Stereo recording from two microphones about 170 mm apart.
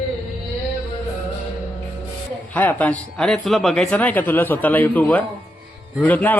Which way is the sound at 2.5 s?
10° left (ahead or behind).